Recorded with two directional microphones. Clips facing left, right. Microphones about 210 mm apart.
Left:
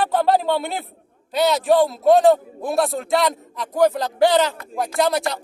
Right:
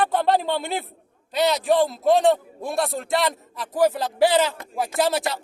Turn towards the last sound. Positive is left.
turn(degrees=-5)  # may be behind; listen again after turning